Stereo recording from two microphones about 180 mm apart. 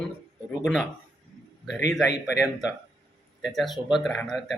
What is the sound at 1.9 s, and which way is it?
Speech, centre (ahead or behind).